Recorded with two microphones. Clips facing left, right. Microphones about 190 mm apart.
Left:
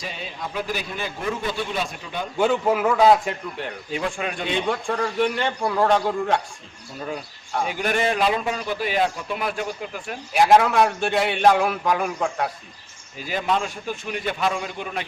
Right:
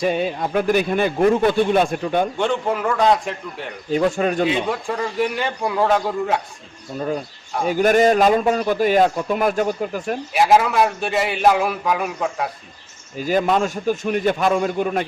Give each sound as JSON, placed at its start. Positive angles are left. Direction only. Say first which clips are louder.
{"t": 0.0, "sound": "a man's voice", "louder": "right 13 dB", "side_deg": -55}
{"t": 2.4, "sound": "a man's voice", "louder": "left 1 dB", "side_deg": 5}
{"t": 3.9, "sound": "speech", "louder": "right 10 dB", "side_deg": -40}
{"t": 4.4, "sound": "a man's voice", "louder": "right 3 dB", "side_deg": -5}
{"t": 7.7, "sound": "a man's voice", "louder": "right 10 dB", "side_deg": -40}
{"t": 10.3, "sound": "a man's voice", "louder": "even", "side_deg": 0}
{"t": 13.1, "sound": "a man's voice", "louder": "right 6 dB", "side_deg": -45}